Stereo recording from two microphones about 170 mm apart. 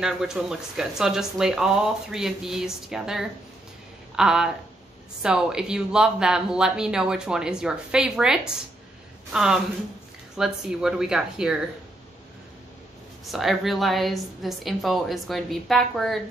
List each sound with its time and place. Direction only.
0.0 s speech: 5° right (ahead or behind)
13.3 s speech: centre (ahead or behind)